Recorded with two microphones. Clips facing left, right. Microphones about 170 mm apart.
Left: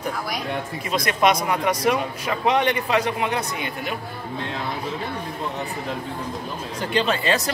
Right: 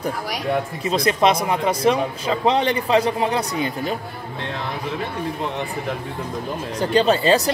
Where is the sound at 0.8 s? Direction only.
30° right (ahead or behind).